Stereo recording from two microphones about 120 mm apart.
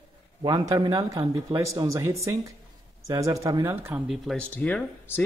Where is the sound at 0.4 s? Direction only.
30° right (ahead or behind).